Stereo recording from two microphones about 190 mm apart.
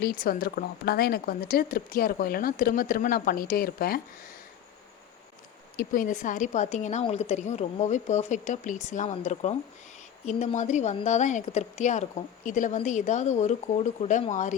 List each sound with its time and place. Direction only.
0.0 s a woman's voice: 50° left (ahead or behind)
5.7 s a woman's voice: 45° left (ahead or behind)